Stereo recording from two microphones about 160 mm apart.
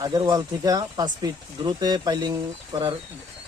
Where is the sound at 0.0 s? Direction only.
25° right (ahead or behind).